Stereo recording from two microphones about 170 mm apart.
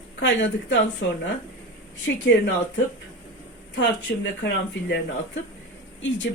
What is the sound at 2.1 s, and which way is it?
Speech, 90° left.